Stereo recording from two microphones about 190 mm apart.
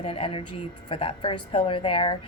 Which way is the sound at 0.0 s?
30° left (ahead or behind).